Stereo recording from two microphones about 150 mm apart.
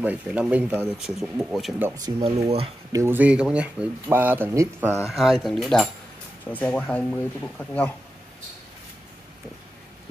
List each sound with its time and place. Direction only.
0.0 s speech: 10° right (ahead or behind)
2.0 s speech: 30° right (ahead or behind)
2.9 s speech: 15° right (ahead or behind)
5.0 s speech: centre (ahead or behind)